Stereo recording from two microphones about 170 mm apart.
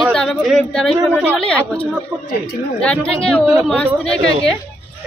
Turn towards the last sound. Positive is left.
turn(degrees=5)  # may be behind; listen again after turning